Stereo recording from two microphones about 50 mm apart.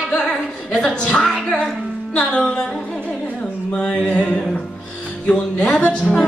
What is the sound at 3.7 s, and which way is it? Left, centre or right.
Speech, centre.